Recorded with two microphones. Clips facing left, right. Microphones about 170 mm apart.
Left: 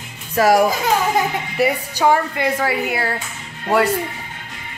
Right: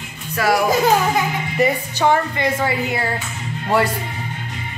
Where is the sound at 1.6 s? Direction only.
10° left (ahead or behind).